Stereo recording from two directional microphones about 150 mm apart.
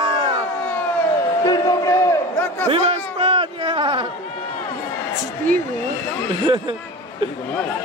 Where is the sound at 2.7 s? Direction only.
35° right (ahead or behind).